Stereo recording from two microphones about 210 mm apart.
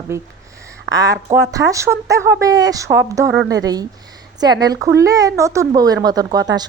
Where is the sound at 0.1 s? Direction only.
15° right (ahead or behind).